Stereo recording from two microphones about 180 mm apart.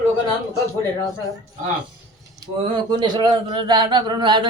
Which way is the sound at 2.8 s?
25° right (ahead or behind).